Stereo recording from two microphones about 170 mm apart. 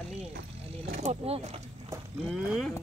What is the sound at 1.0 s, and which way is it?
Speech, 40° right (ahead or behind).